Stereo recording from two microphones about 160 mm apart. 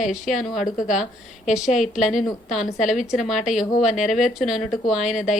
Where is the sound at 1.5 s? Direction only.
5° right (ahead or behind).